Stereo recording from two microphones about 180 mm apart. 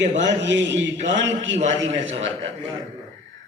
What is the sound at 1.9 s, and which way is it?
Speech, 35° right (ahead or behind).